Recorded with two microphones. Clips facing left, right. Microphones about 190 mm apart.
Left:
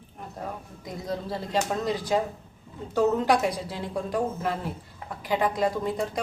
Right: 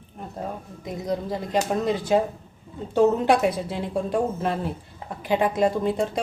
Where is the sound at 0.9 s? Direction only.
20° right (ahead or behind).